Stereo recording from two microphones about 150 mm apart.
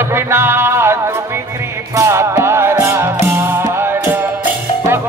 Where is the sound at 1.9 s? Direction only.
15° right (ahead or behind).